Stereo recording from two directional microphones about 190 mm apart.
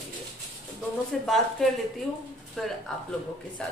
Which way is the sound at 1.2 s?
Centre (ahead or behind).